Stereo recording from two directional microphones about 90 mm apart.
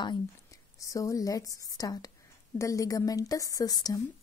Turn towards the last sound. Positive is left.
turn(degrees=45)  # may be behind; listen again after turning